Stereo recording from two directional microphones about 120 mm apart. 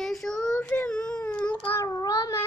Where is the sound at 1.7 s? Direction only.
25° left (ahead or behind).